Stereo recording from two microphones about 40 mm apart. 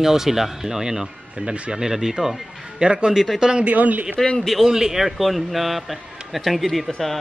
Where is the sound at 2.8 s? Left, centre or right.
Right.